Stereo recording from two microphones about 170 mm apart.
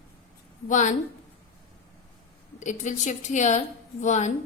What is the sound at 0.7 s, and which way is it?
Speech, 45° left (ahead or behind).